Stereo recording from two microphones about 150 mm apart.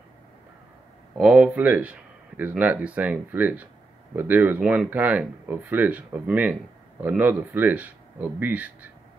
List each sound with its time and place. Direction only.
1.1 s speech: 5° right (ahead or behind)